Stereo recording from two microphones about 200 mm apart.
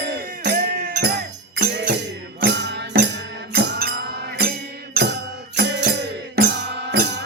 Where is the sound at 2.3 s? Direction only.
60° right (ahead or behind).